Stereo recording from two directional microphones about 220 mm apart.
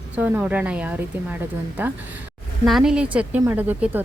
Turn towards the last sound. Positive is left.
turn(degrees=-10)  # may be behind; listen again after turning